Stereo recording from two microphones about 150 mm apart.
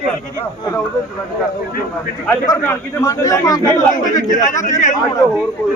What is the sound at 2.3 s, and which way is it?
A man's voice, 20° left (ahead or behind).